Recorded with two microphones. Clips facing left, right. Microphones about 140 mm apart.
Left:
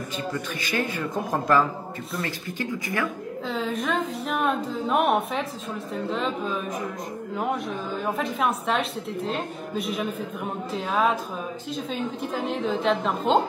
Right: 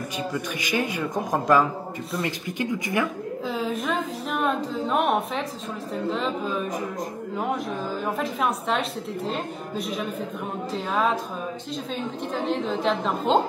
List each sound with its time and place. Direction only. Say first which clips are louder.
0.3 s a man's voice: right 2 dB; 15° right (ahead or behind)
3.4 s a sound: even; centre (ahead or behind)
6.0 s a woman's voice: right 1 dB; centre (ahead or behind)